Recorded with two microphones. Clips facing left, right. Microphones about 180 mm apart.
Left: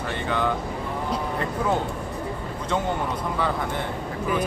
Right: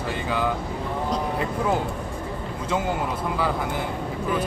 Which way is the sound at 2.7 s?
5° right (ahead or behind).